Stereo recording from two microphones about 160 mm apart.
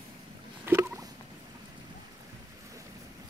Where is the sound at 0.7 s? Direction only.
15° right (ahead or behind).